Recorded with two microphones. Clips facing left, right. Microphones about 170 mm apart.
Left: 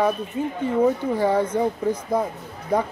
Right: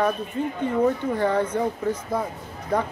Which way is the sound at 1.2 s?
10° left (ahead or behind).